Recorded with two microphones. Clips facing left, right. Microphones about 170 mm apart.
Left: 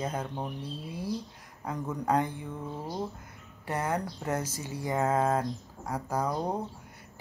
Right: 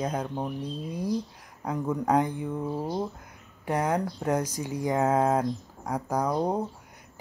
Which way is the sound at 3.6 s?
15° right (ahead or behind).